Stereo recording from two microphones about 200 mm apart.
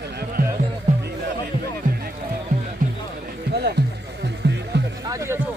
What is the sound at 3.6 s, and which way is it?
Music, 55° right (ahead or behind).